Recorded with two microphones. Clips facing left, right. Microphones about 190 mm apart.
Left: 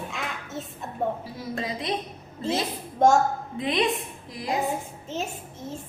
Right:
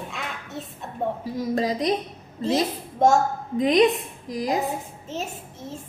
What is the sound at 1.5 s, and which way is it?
Speech, 40° right (ahead or behind).